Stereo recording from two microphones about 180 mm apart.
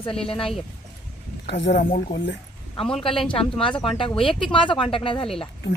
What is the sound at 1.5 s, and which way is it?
Speech, 75° left (ahead or behind).